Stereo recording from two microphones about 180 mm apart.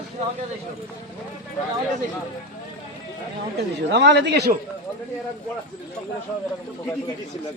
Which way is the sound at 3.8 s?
70° right (ahead or behind).